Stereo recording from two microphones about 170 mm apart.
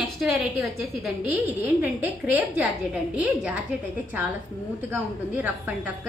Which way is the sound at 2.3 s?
10° right (ahead or behind).